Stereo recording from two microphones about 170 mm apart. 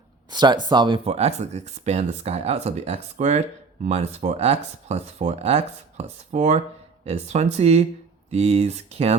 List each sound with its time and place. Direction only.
0.3 s speech: 25° right (ahead or behind)